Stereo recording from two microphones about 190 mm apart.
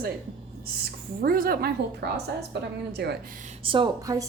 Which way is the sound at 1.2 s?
50° right (ahead or behind).